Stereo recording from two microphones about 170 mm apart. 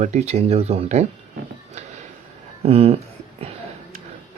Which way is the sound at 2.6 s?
35° right (ahead or behind).